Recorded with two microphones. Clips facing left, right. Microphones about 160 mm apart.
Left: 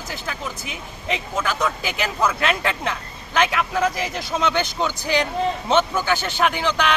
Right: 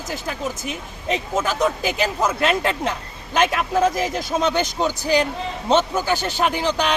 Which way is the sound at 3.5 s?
45° right (ahead or behind).